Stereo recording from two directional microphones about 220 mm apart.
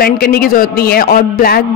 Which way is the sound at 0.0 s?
45° left (ahead or behind).